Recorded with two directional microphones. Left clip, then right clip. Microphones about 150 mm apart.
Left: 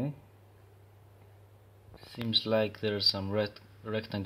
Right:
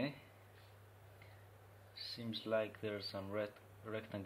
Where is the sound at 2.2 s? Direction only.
70° left (ahead or behind).